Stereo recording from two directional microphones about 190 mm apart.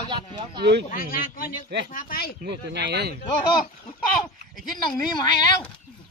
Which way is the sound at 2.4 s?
60° right (ahead or behind).